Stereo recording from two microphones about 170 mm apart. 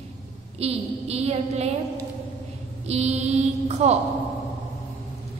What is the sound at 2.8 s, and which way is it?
A woman's voice, 40° right (ahead or behind).